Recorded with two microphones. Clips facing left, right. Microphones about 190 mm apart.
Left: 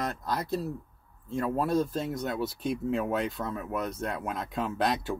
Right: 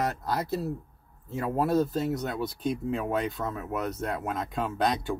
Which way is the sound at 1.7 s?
Centre (ahead or behind).